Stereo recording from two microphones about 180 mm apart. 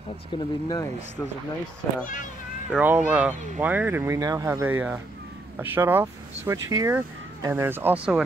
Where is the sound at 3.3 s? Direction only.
40° right (ahead or behind).